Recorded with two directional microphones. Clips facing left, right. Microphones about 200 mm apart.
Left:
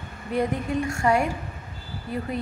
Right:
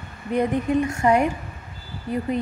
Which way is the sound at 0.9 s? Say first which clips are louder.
Right 1 dB; 20° right (ahead or behind).